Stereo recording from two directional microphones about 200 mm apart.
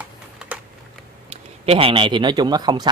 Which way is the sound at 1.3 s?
30° right (ahead or behind).